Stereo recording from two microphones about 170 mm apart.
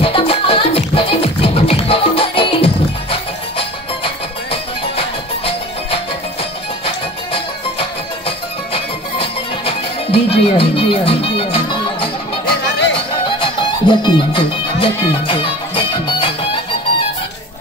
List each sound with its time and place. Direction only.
0.0 s music: 35° left (ahead or behind)
8.7 s music: 35° left (ahead or behind)